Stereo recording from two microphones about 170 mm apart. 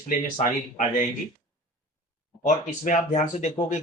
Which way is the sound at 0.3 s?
50° left (ahead or behind).